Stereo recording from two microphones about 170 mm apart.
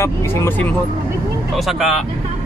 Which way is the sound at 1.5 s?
Centre (ahead or behind).